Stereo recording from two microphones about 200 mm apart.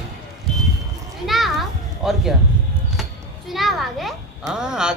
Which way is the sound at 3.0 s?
Centre (ahead or behind).